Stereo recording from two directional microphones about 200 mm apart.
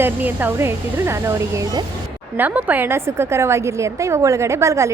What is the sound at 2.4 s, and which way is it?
A woman's voice, 5° right (ahead or behind).